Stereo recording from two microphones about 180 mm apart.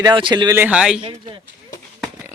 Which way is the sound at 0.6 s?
5° right (ahead or behind).